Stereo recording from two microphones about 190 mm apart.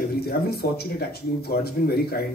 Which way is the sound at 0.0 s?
55° left (ahead or behind).